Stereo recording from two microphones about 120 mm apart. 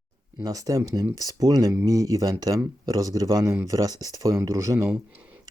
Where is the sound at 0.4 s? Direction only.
30° right (ahead or behind).